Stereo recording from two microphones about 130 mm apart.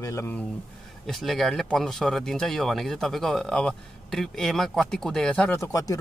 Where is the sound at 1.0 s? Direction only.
Centre (ahead or behind).